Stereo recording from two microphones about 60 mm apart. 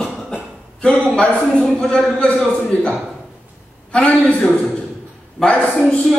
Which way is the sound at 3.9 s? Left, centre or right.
Centre.